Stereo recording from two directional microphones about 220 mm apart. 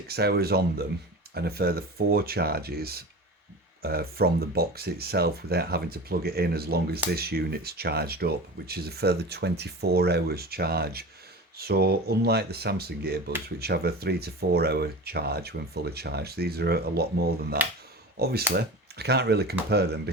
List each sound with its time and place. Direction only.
0.1 s speech: 45° right (ahead or behind)